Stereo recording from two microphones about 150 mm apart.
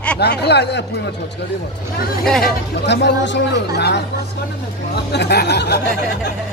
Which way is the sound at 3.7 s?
90° left.